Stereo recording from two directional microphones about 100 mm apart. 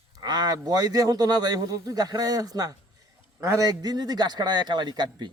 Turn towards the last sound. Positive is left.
turn(degrees=-45)  # may be behind; listen again after turning